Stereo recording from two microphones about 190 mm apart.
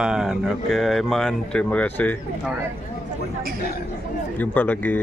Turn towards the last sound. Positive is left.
turn(degrees=10)  # may be behind; listen again after turning